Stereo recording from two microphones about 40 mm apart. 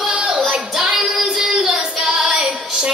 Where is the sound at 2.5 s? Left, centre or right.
Centre.